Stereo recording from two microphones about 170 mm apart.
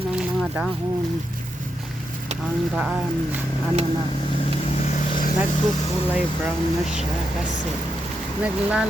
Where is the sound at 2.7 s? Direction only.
Centre (ahead or behind).